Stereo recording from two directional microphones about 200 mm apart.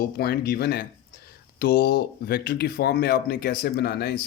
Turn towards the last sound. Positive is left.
turn(degrees=55)  # may be behind; listen again after turning